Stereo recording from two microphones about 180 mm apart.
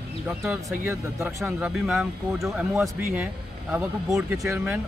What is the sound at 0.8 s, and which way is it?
Speech, 10° right (ahead or behind).